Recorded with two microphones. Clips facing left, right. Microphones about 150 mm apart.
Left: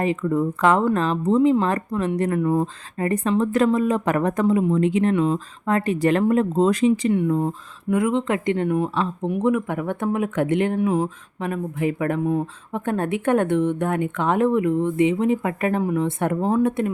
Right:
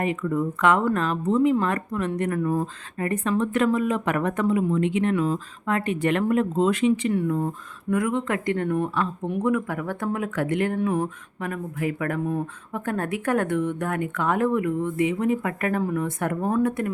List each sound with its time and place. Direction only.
0.0 s speech: 30° left (ahead or behind)
2.4 s speech: 20° left (ahead or behind)
3.1 s speech: 35° left (ahead or behind)
7.1 s speech: 20° left (ahead or behind)
11.3 s speech: 25° left (ahead or behind)